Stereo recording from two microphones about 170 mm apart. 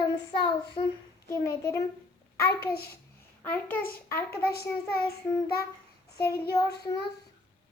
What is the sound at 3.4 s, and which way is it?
Speech, 10° left (ahead or behind).